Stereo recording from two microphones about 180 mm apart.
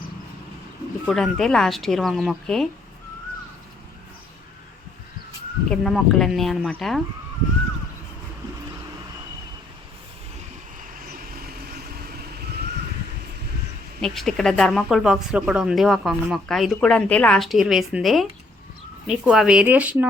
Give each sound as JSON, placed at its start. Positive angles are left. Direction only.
{"t": 1.0, "sound": "speech", "side_deg": 0}
{"t": 5.6, "sound": "speech", "side_deg": 5}
{"t": 11.3, "sound": "vehicle", "side_deg": -60}
{"t": 14.0, "sound": "speech", "side_deg": 0}